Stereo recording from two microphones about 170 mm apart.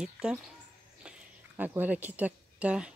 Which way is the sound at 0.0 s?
5° right (ahead or behind).